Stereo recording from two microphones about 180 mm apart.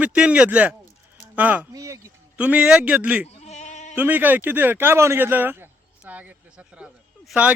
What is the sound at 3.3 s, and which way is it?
Bleat, 35° left (ahead or behind).